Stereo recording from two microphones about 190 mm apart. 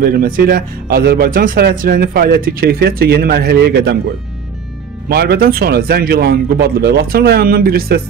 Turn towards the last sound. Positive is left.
turn(degrees=-50)  # may be behind; listen again after turning